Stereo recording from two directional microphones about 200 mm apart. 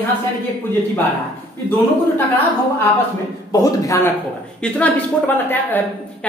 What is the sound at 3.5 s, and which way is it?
Speech, 15° left (ahead or behind).